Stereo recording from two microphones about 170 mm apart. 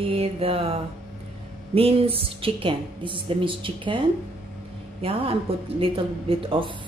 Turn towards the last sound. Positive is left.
turn(degrees=-30)  # may be behind; listen again after turning